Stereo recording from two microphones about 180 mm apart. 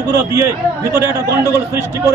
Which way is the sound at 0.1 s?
15° right (ahead or behind).